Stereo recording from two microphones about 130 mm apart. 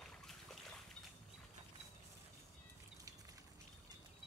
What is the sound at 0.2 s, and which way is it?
Boat, centre (ahead or behind).